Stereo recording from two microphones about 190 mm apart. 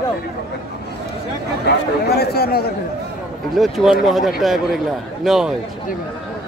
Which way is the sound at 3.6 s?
Centre (ahead or behind).